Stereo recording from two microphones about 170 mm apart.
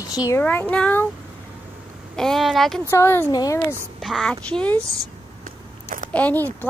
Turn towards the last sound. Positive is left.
turn(degrees=10)  # may be behind; listen again after turning